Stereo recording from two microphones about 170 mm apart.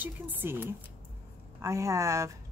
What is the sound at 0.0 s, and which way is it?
A woman's voice, 10° right (ahead or behind).